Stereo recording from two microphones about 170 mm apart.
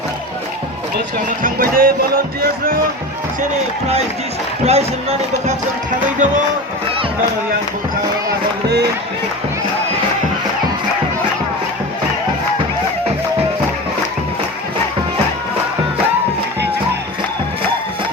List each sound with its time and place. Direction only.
1.4 s music: 55° right (ahead or behind)
4.6 s speech: 40° right (ahead or behind)